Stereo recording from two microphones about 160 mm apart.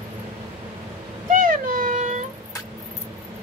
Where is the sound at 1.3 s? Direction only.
55° right (ahead or behind).